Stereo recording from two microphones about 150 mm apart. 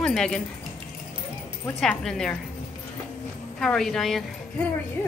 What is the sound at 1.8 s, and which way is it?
Speech, 5° left (ahead or behind).